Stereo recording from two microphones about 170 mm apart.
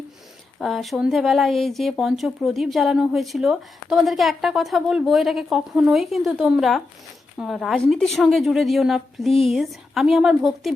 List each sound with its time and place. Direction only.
0.6 s speech: centre (ahead or behind)